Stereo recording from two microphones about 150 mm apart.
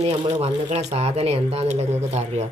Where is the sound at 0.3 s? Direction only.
45° right (ahead or behind).